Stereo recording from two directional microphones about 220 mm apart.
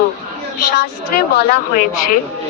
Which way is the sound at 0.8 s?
45° left (ahead or behind).